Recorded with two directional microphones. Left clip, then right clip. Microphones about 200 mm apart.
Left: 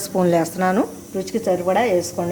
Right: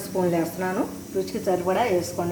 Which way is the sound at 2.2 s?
55° left (ahead or behind).